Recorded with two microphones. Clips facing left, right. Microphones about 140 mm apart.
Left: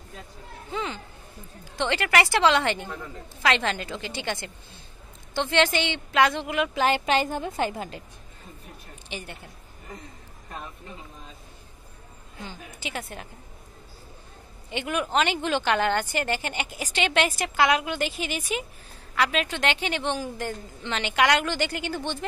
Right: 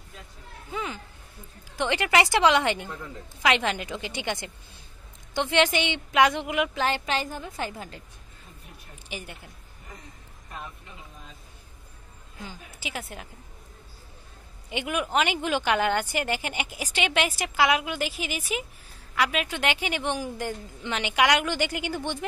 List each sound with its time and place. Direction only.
0.7 s a woman's voice: 5° right (ahead or behind)
6.7 s a woman's voice: 15° left (ahead or behind)
9.1 s a woman's voice: 10° right (ahead or behind)
12.4 s a woman's voice: 5° right (ahead or behind)
14.7 s a woman's voice: 10° right (ahead or behind)